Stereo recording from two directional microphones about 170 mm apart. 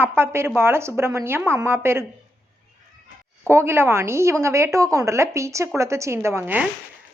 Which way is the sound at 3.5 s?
15° right (ahead or behind).